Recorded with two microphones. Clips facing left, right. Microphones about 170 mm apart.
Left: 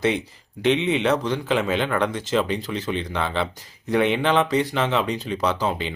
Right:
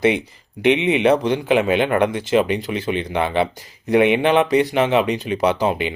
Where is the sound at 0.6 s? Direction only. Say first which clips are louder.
Right 4 dB; 15° right (ahead or behind).